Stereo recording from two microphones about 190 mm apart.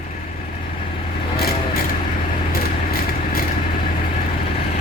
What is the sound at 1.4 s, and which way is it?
Vehicle, 55° left (ahead or behind).